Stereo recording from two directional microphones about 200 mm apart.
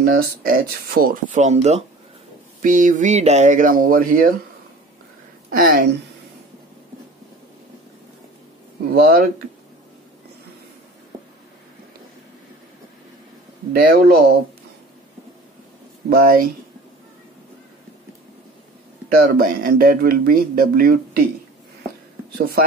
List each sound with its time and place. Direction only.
0.0 s speech: 50° right (ahead or behind)
5.5 s speech: 45° right (ahead or behind)
8.9 s speech: 45° right (ahead or behind)
13.7 s speech: 50° right (ahead or behind)
16.1 s speech: 45° right (ahead or behind)
19.0 s speech: 45° right (ahead or behind)